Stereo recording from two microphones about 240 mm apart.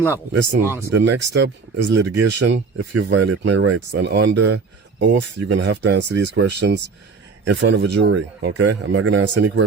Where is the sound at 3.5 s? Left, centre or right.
Right.